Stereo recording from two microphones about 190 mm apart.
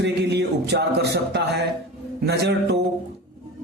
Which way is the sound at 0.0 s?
60° right (ahead or behind).